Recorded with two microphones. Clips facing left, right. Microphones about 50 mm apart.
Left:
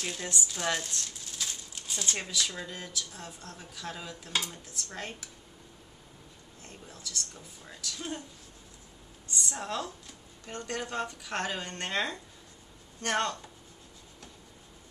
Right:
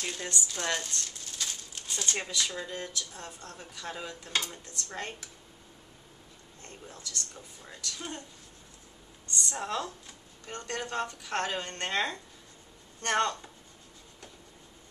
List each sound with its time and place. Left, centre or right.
0.0 s speech: centre
6.6 s speech: centre
9.3 s a woman's voice: centre
10.7 s a woman's voice: centre